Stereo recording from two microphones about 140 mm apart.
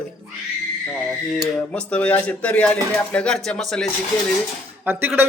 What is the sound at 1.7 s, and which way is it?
A man's voice, 10° left (ahead or behind).